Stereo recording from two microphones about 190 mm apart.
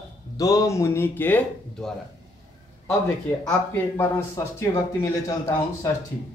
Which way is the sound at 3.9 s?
15° left (ahead or behind).